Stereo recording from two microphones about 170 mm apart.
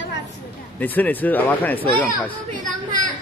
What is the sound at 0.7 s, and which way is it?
Speech, 10° left (ahead or behind).